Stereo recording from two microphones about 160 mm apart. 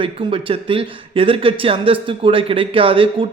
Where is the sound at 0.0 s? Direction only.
35° right (ahead or behind).